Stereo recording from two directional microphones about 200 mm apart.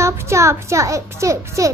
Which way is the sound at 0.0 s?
15° right (ahead or behind).